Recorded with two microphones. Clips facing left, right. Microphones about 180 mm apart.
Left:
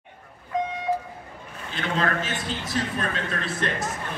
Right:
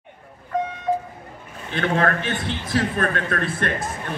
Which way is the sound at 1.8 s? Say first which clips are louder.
Right 5 dB; 60° right (ahead or behind).